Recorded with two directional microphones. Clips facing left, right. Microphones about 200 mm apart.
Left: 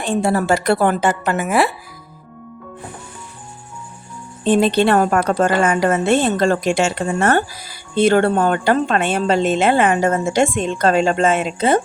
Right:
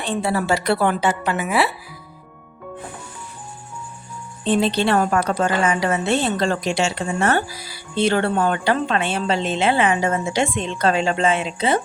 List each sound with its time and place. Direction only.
0.0 s a woman's voice: 45° left (ahead or behind)
4.4 s a woman's voice: 50° left (ahead or behind)